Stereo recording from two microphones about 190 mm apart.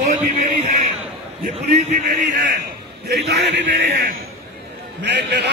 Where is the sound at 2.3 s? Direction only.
65° right (ahead or behind).